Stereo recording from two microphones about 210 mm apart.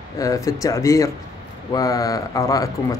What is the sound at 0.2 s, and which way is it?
Speech, 15° left (ahead or behind).